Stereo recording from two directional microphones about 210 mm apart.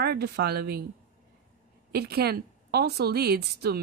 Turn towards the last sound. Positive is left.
turn(degrees=-50)  # may be behind; listen again after turning